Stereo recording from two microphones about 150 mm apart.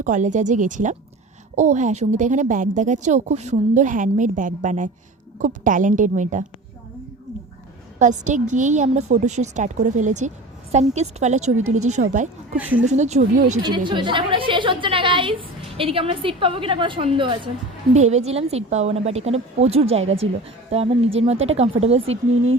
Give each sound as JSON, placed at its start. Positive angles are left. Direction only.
{"t": 0.0, "sound": "a woman's voice", "side_deg": -55}
{"t": 7.9, "sound": "a woman's voice", "side_deg": -55}
{"t": 12.5, "sound": "speech", "side_deg": -10}
{"t": 12.9, "sound": "speech", "side_deg": -50}
{"t": 13.6, "sound": "a woman's voice", "side_deg": -30}
{"t": 17.9, "sound": "speech", "side_deg": -50}